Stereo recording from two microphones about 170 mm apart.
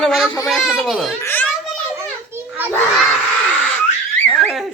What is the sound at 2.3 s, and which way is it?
Children playing, 10° right (ahead or behind).